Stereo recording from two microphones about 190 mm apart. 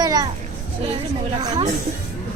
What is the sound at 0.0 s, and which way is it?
Children playing, 20° right (ahead or behind).